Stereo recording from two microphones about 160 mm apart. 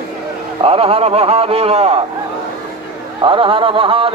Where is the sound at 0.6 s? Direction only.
35° right (ahead or behind).